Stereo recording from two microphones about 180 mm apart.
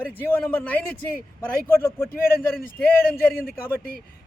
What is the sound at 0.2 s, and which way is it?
A man's voice, 10° left (ahead or behind).